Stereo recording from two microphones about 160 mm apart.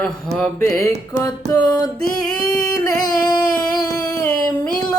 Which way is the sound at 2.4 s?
5° left (ahead or behind).